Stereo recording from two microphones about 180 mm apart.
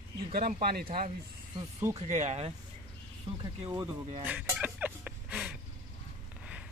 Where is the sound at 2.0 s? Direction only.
40° right (ahead or behind).